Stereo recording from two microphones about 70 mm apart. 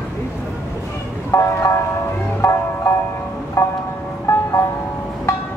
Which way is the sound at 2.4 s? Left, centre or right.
Left.